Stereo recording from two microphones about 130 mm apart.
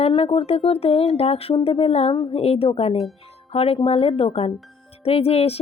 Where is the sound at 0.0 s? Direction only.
45° left (ahead or behind).